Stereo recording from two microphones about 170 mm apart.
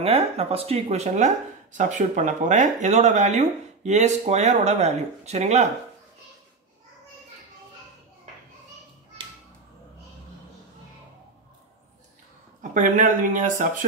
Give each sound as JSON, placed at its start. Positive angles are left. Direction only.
{"t": 0.0, "sound": "speech", "side_deg": -35}
{"t": 12.7, "sound": "speech", "side_deg": -50}